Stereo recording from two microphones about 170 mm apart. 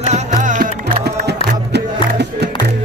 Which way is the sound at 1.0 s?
75° right (ahead or behind).